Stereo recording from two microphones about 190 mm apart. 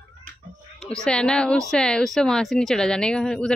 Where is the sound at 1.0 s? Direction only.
5° left (ahead or behind).